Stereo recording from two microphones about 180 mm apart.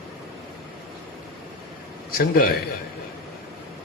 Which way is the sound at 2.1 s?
55° left (ahead or behind).